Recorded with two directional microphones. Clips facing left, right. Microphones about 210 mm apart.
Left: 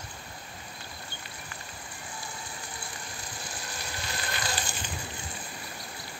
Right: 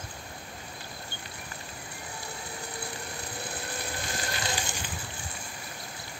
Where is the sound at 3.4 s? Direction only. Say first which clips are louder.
Right 3 dB; 55° right (ahead or behind).